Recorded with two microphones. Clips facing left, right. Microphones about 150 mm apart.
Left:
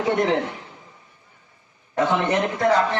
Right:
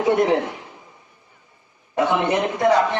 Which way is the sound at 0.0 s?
15° right (ahead or behind).